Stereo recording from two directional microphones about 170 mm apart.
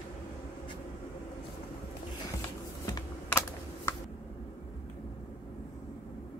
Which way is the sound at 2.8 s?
15° left (ahead or behind).